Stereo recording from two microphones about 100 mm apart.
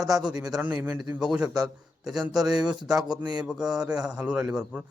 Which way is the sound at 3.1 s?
45° right (ahead or behind).